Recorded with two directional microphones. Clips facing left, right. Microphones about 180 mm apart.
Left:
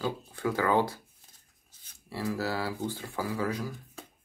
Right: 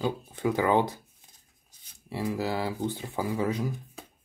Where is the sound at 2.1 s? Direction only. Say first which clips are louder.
Right 2 dB; 15° right (ahead or behind).